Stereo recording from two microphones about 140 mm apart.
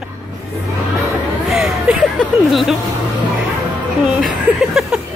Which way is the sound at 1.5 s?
5° right (ahead or behind).